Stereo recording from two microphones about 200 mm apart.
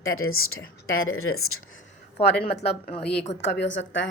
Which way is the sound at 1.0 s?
90° left.